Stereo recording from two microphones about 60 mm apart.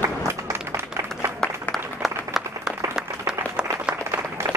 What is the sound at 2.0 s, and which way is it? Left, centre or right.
Applause, centre.